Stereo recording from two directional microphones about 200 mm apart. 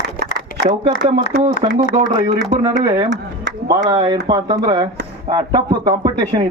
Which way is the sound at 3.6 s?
20° right (ahead or behind).